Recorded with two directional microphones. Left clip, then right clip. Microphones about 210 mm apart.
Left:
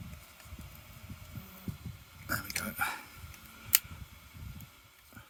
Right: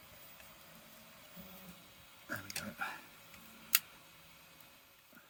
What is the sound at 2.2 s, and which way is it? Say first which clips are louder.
Dog: left 7 dB; 35° left (ahead or behind).